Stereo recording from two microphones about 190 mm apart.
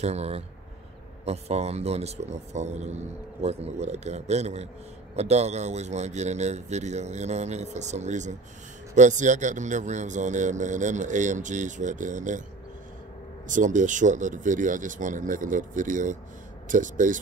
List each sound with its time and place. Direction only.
0.0 s speech: 35° right (ahead or behind)
13.5 s speech: 40° right (ahead or behind)